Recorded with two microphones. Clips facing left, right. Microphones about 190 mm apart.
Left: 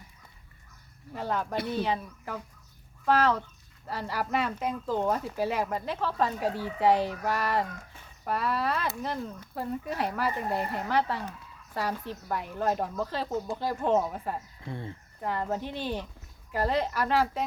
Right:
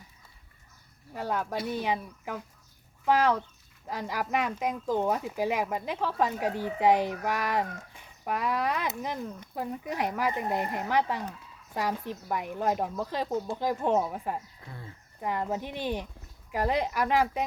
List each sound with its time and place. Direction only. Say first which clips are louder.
1.1 s speech: left 1 dB; 10° right (ahead or behind)
14.7 s speech: left 8 dB; 25° left (ahead or behind)
15.2 s speech: even; 10° right (ahead or behind)